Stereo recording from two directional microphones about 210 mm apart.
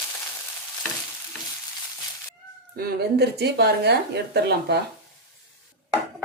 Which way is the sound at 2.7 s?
50° right (ahead or behind).